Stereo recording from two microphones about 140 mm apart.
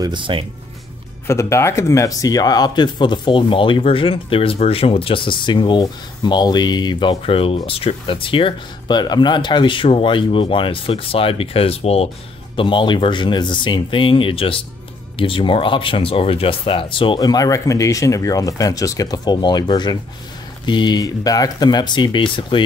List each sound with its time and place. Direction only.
0.0 s speech: 35° right (ahead or behind)
1.2 s speech: 20° left (ahead or behind); by 22.6 s 35° left (ahead or behind)